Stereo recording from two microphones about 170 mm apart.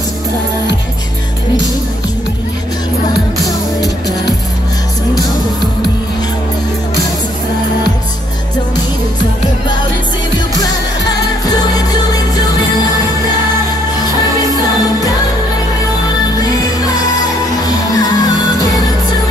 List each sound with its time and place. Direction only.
17.6 s music: 20° left (ahead or behind)